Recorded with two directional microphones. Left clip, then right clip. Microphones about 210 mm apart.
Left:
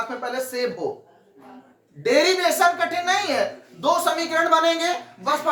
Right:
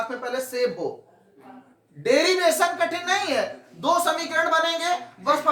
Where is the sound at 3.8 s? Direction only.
5° left (ahead or behind).